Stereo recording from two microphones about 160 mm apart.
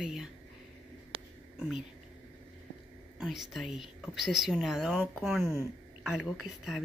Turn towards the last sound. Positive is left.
turn(degrees=0)  # may be behind; listen again after turning